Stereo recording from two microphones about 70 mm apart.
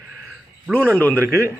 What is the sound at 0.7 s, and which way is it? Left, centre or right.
Speech, left.